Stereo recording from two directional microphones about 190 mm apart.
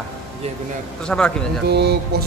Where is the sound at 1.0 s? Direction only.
5° left (ahead or behind).